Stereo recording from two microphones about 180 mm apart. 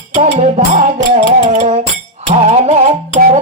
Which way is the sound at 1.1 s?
40° right (ahead or behind).